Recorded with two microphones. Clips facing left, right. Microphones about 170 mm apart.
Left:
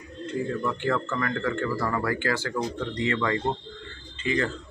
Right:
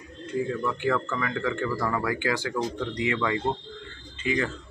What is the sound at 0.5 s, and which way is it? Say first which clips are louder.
Speech: even; centre (ahead or behind).